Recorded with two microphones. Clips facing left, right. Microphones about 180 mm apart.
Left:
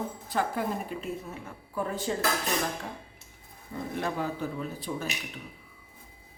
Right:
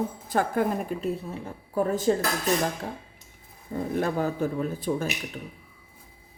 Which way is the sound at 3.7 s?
45° right (ahead or behind).